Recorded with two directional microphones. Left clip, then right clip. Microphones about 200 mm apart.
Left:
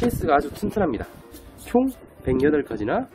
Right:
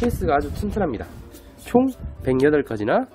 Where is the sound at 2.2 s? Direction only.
30° right (ahead or behind).